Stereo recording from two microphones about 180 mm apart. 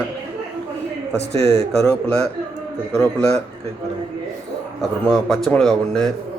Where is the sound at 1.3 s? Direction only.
65° left (ahead or behind).